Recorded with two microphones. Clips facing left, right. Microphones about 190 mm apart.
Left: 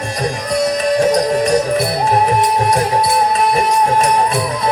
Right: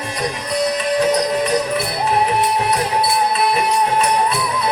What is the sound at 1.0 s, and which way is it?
Music, 45° left (ahead or behind).